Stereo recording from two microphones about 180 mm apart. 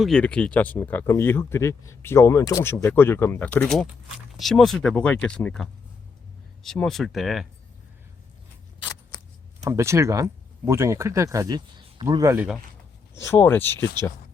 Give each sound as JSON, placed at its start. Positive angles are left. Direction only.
{"t": 0.0, "sound": "speech", "side_deg": 5}
{"t": 9.6, "sound": "speech", "side_deg": -15}
{"t": 13.1, "sound": "speech", "side_deg": 15}